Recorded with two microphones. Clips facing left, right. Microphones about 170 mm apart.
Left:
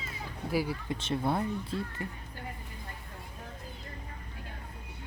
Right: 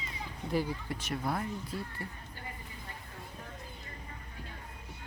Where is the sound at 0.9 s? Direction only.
25° left (ahead or behind).